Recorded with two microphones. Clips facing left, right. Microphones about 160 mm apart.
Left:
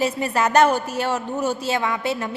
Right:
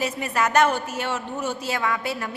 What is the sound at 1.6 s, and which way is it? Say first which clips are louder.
Speech: left 3 dB; 25° left (ahead or behind).